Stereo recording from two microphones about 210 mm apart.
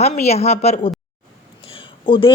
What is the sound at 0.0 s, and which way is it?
Speech, 30° left (ahead or behind).